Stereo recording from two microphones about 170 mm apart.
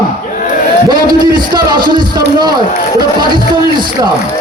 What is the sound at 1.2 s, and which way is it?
Speech, 25° right (ahead or behind).